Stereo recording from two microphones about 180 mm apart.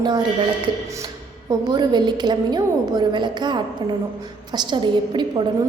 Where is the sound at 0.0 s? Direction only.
25° right (ahead or behind).